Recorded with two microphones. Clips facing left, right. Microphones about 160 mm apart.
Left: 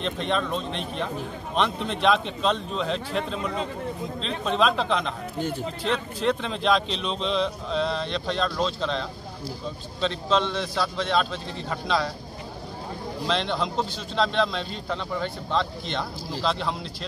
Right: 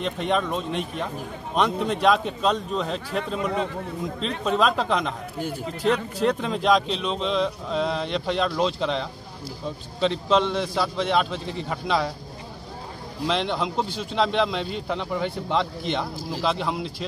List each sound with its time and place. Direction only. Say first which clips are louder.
0.2 s speech: right 3 dB; 10° right (ahead or behind)
1.9 s a man's voice: right 2 dB; 5° right (ahead or behind)
13.3 s speech: right 1 dB; 10° right (ahead or behind)